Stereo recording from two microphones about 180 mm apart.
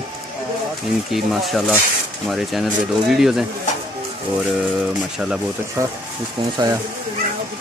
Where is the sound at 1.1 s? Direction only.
Centre (ahead or behind).